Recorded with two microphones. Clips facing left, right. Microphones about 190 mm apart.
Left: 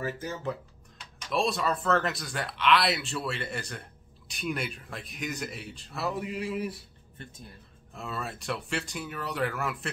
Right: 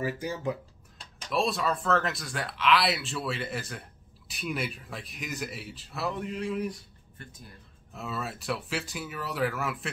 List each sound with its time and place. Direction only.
0.0 s speech: 15° right (ahead or behind)
1.3 s speech: centre (ahead or behind)
7.2 s speech: 25° left (ahead or behind)
7.9 s speech: centre (ahead or behind)